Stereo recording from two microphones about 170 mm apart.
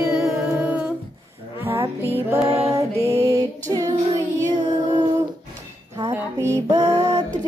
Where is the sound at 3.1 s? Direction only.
20° right (ahead or behind).